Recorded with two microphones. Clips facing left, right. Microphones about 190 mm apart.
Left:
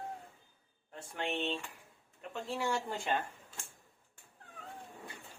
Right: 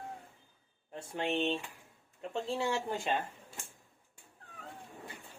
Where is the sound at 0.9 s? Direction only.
25° right (ahead or behind).